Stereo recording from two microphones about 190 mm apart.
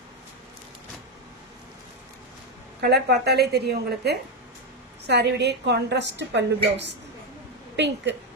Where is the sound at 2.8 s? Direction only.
60° right (ahead or behind).